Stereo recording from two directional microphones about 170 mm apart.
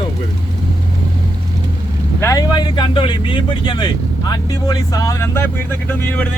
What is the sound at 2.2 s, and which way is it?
Speech, 20° left (ahead or behind).